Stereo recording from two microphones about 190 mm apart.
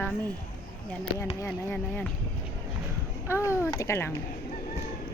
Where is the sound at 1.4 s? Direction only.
10° left (ahead or behind).